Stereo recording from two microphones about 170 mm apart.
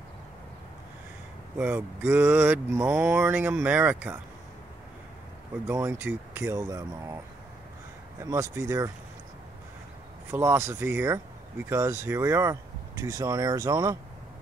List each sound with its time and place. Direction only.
1.6 s speech: 10° right (ahead or behind)
5.7 s speech: 15° right (ahead or behind)
8.2 s speech: 20° right (ahead or behind)
10.3 s speech: 15° right (ahead or behind)